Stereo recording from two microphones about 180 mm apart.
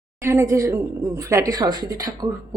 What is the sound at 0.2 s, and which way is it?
A woman's voice, 15° right (ahead or behind).